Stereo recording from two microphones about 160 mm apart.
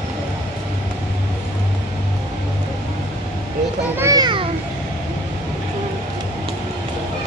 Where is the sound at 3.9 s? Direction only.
20° right (ahead or behind).